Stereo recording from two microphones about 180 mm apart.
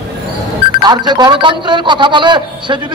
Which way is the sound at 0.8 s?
25° right (ahead or behind).